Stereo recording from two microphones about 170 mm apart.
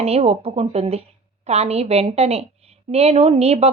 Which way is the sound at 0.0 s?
35° right (ahead or behind).